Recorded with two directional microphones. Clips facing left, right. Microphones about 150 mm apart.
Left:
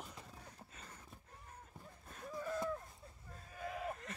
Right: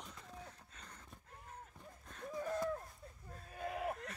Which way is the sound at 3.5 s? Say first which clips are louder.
Right 2 dB; 50° right (ahead or behind).